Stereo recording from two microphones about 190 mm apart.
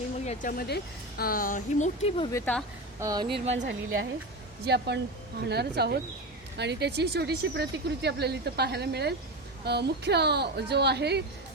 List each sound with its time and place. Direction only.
0.3 s a woman's voice: 45° left (ahead or behind); by 2.3 s 30° left (ahead or behind)
2.3 s speech: 10° left (ahead or behind)
3.0 s speech: 20° right (ahead or behind)
3.7 s a woman's voice: 75° right (ahead or behind)
4.6 s speech: 60° right (ahead or behind)